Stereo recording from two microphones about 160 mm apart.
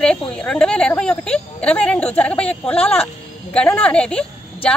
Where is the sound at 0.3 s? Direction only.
5° left (ahead or behind).